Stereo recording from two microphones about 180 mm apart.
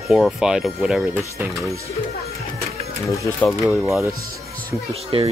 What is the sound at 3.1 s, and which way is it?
Speech, 15° left (ahead or behind).